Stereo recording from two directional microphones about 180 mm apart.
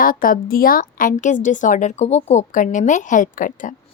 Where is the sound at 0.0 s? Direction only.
50° left (ahead or behind).